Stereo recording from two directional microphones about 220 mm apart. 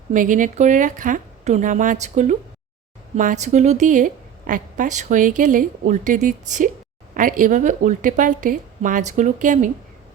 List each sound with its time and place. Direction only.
0.1 s a woman's voice: 35° right (ahead or behind)